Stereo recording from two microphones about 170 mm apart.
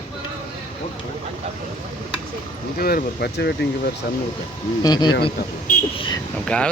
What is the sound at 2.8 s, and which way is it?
Speech, 65° left (ahead or behind).